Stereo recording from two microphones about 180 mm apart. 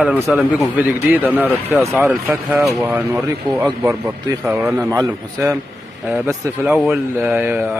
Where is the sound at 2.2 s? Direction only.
Centre (ahead or behind).